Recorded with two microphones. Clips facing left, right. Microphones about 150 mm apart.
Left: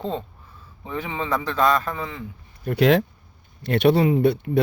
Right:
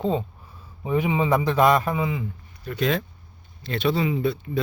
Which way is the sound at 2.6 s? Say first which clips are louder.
Left 7 dB; 60° left (ahead or behind).